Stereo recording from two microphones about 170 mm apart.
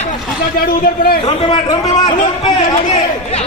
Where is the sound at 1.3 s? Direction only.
35° left (ahead or behind).